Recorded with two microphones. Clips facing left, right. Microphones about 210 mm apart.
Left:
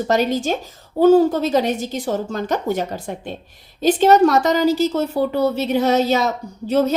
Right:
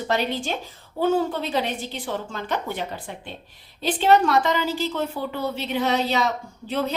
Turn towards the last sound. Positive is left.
turn(degrees=40)  # may be behind; listen again after turning